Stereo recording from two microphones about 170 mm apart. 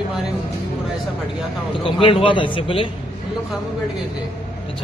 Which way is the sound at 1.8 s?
30° left (ahead or behind).